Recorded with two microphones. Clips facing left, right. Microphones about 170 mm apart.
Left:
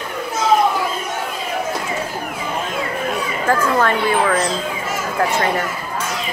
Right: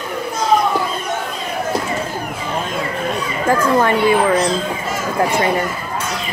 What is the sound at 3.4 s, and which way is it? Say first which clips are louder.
Speech: right 2 dB; 15° right (ahead or behind).